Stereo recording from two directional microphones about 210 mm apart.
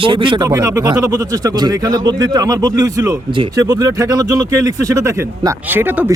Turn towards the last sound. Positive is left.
turn(degrees=-10)  # may be behind; listen again after turning